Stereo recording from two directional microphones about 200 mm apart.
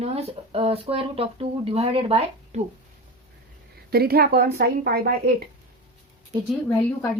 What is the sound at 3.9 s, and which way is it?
Speech, 50° right (ahead or behind).